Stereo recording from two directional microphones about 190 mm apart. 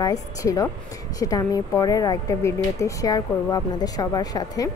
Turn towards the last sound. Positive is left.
turn(degrees=20)  # may be behind; listen again after turning